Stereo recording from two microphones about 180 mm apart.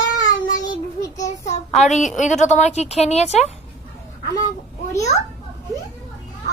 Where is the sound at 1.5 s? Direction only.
35° left (ahead or behind).